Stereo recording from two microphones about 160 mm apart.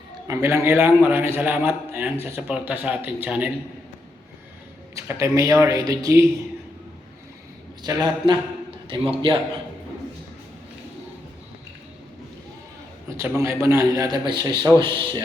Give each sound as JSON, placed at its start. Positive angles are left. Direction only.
{"t": 0.3, "sound": "speech", "side_deg": -15}
{"t": 4.9, "sound": "a man's voice", "side_deg": -20}
{"t": 7.9, "sound": "a man's voice", "side_deg": -25}
{"t": 13.1, "sound": "a sound", "side_deg": -20}
{"t": 13.4, "sound": "a man's voice", "side_deg": -20}